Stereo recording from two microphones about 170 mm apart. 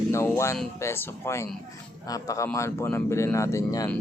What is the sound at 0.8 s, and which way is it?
A man's voice, 15° left (ahead or behind).